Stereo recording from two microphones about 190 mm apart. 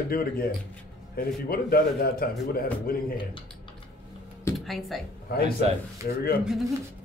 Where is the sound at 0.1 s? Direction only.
50° left (ahead or behind).